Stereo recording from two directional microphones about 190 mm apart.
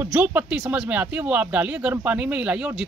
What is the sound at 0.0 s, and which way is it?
A man's voice, 10° right (ahead or behind).